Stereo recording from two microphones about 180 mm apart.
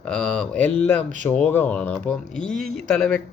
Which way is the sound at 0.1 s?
5° left (ahead or behind).